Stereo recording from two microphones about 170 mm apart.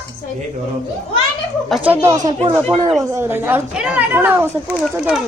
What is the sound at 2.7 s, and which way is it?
Speech, 30° right (ahead or behind).